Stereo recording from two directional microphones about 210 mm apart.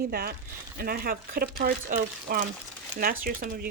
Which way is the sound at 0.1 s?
45° right (ahead or behind).